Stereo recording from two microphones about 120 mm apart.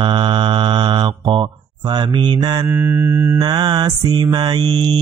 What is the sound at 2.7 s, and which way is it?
Mantra, 20° right (ahead or behind).